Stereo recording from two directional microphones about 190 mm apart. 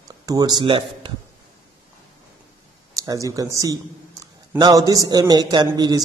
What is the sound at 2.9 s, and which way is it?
A man's voice, 20° right (ahead or behind).